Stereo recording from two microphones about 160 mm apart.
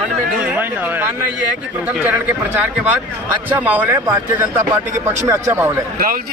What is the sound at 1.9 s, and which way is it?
Speech, 10° right (ahead or behind).